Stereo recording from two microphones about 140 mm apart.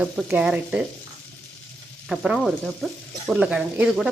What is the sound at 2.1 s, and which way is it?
Speech, centre (ahead or behind).